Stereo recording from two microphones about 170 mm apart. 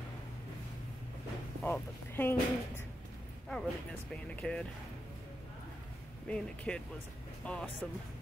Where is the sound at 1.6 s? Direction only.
10° left (ahead or behind).